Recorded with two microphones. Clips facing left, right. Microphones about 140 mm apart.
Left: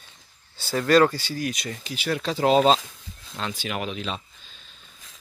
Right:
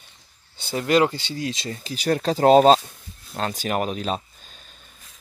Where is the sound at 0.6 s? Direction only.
20° right (ahead or behind); by 4.2 s 40° right (ahead or behind).